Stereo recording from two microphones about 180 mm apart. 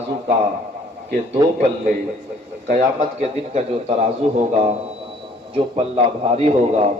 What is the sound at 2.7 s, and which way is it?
Speech, 40° right (ahead or behind).